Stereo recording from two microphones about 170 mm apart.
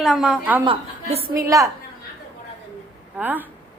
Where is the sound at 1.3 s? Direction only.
20° right (ahead or behind).